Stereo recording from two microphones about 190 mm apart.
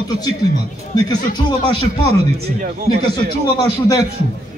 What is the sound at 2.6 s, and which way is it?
Speech, 35° right (ahead or behind).